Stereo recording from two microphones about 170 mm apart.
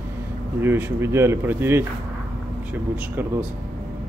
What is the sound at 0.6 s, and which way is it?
Speech, 15° right (ahead or behind).